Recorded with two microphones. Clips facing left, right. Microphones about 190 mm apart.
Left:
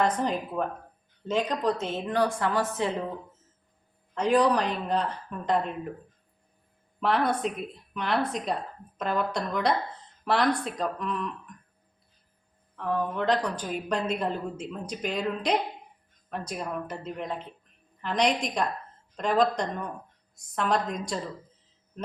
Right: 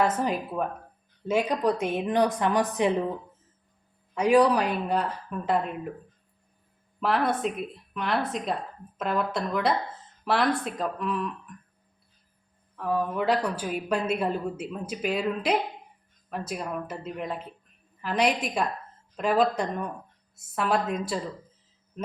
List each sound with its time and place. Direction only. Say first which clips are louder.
0.0 s a woman's voice: right 1 dB; 5° right (ahead or behind)
4.1 s a woman's voice: right 2 dB; 10° right (ahead or behind)
7.0 s a woman's voice: even; centre (ahead or behind)
12.7 s a woman's voice: right 1 dB; 10° right (ahead or behind)